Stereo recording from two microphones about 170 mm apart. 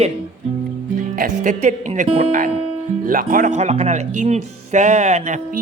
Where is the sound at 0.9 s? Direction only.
55° right (ahead or behind).